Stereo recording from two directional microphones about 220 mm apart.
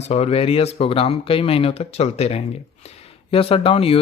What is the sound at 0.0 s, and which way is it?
Speech, 30° left (ahead or behind).